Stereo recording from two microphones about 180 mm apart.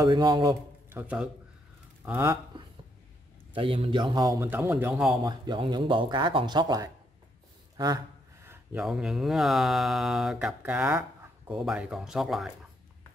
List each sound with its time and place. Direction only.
0.0 s speech: 25° right (ahead or behind)
0.8 s speech: 10° right (ahead or behind)
2.5 s a sound: 25° right (ahead or behind)
3.5 s speech: 30° right (ahead or behind); by 5.1 s 10° right (ahead or behind)
5.2 s speech: 25° right (ahead or behind)
7.7 s a sound: 20° right (ahead or behind)
8.7 s speech: 5° right (ahead or behind)